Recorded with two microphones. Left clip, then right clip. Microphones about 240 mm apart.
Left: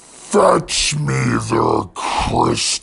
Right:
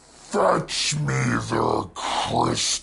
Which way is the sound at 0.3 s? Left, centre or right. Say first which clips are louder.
Left 7 dB; left.